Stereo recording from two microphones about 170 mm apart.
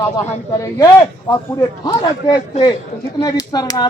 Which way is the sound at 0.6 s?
20° left (ahead or behind).